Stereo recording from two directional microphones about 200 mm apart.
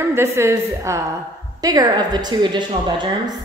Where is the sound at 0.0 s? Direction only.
10° right (ahead or behind).